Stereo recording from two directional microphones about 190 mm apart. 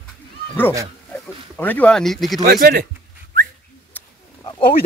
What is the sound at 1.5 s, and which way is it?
Speech, 10° left (ahead or behind).